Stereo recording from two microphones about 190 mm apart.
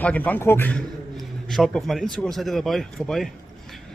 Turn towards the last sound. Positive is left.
turn(degrees=0)  # may be behind; listen again after turning